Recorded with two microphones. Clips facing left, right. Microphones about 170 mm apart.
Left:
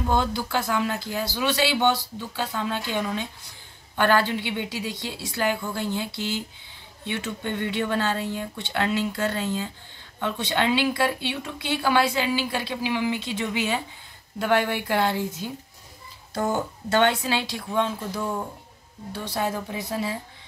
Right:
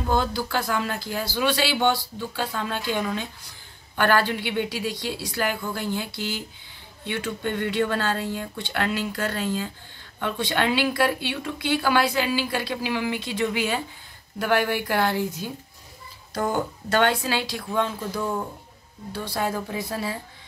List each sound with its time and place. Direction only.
0.1 s speech: 20° left (ahead or behind)
3.9 s speech: 25° left (ahead or behind)
16.5 s speech: 25° left (ahead or behind)
18.1 s speech: 5° left (ahead or behind)
19.1 s speech: 20° left (ahead or behind)